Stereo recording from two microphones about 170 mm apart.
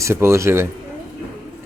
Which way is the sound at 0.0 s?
15° right (ahead or behind).